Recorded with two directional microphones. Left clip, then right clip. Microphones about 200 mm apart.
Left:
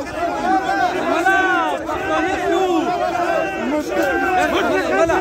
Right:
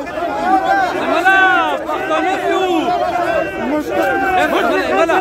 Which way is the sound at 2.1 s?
10° right (ahead or behind).